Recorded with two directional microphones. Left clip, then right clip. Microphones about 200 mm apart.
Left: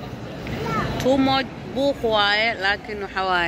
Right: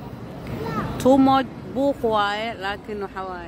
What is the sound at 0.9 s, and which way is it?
Speech, 30° right (ahead or behind).